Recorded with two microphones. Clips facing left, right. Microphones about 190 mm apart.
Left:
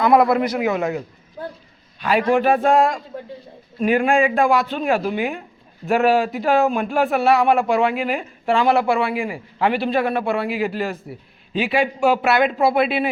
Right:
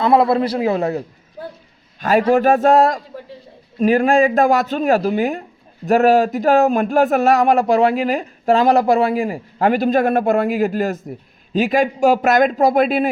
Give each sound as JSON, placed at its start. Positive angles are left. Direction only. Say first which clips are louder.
{"t": 0.0, "sound": "speech", "louder": "right 1 dB", "side_deg": -30}